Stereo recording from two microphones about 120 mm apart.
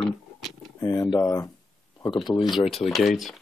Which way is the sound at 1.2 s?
25° left (ahead or behind).